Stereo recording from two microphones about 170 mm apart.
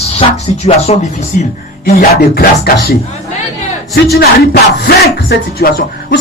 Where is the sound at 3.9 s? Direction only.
65° left (ahead or behind).